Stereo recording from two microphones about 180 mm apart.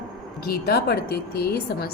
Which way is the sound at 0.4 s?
60° left (ahead or behind).